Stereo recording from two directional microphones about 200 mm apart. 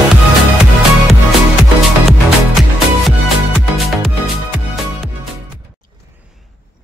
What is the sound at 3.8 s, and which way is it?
Music, centre (ahead or behind).